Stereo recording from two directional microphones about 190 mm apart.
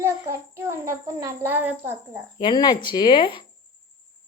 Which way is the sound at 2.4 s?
25° left (ahead or behind).